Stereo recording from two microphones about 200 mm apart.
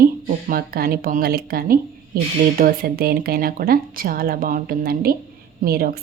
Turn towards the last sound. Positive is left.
turn(degrees=-50)  # may be behind; listen again after turning